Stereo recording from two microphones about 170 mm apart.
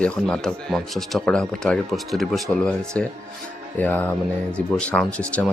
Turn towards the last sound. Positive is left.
turn(degrees=5)  # may be behind; listen again after turning